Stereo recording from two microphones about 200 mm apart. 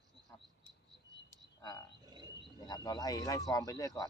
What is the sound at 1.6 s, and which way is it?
Frog, 20° left (ahead or behind).